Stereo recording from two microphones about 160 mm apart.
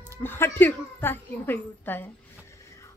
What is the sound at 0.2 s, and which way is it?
A child's voice, 15° left (ahead or behind).